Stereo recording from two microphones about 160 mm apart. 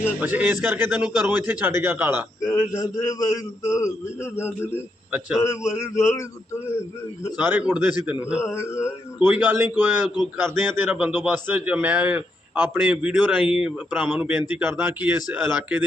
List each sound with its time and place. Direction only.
0.2 s a man's voice: 10° right (ahead or behind)
2.4 s a man's voice: 20° left (ahead or behind)
5.7 s speech: 15° left (ahead or behind)
7.3 s a man's voice: 10° right (ahead or behind)
8.4 s speech: 15° left (ahead or behind)
9.1 s a man's voice: 10° right (ahead or behind)